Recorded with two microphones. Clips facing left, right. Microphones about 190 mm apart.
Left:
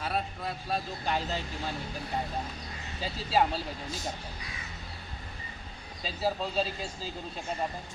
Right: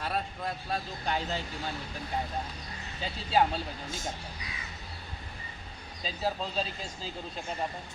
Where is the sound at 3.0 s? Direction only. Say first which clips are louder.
Even; centre (ahead or behind).